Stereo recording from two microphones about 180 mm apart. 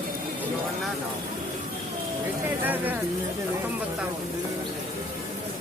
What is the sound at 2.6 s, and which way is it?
Speech, 10° right (ahead or behind).